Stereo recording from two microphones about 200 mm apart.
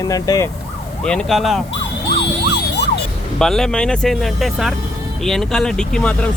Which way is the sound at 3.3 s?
Centre (ahead or behind).